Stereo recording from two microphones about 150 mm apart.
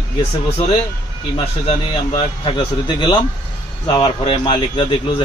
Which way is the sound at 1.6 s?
40° left (ahead or behind).